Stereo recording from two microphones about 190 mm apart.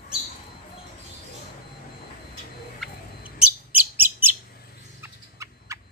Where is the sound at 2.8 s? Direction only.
5° right (ahead or behind).